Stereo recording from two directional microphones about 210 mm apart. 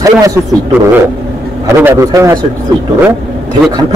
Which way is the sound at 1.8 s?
15° right (ahead or behind).